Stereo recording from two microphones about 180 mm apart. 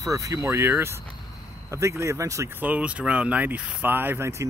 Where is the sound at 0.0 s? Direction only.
20° right (ahead or behind).